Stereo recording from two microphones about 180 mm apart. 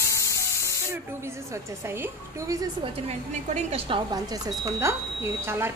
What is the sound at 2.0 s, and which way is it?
Speech, 20° right (ahead or behind).